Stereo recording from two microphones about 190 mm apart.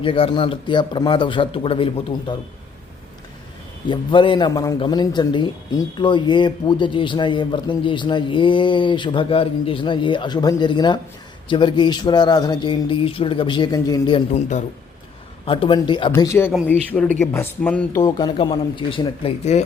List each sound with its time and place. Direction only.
0.0 s a man's voice: 30° left (ahead or behind)
3.8 s a man's voice: 25° left (ahead or behind)
15.4 s a man's voice: 25° left (ahead or behind); by 18.0 s 5° left (ahead or behind)
18.0 s a man's voice: 20° left (ahead or behind)